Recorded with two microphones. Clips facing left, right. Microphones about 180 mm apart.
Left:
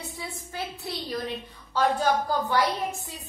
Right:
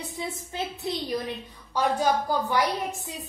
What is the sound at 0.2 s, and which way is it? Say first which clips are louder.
A woman's voice: right 4 dB; 20° right (ahead or behind).